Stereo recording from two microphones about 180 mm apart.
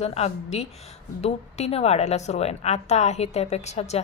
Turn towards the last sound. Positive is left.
turn(degrees=35)  # may be behind; listen again after turning